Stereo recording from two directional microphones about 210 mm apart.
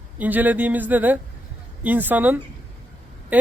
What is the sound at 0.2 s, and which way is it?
Speech, 10° right (ahead or behind).